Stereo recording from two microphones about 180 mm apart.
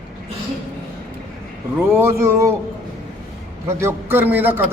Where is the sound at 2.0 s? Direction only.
15° right (ahead or behind).